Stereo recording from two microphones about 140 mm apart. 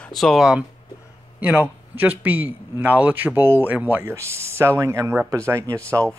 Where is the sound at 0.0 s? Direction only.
Centre (ahead or behind).